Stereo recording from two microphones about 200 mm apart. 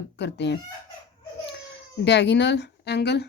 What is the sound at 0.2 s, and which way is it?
Speech, 60° left (ahead or behind).